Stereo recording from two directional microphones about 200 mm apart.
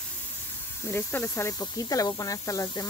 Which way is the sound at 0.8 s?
10° left (ahead or behind).